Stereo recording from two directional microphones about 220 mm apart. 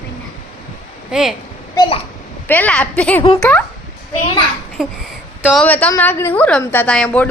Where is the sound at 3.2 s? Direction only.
20° left (ahead or behind).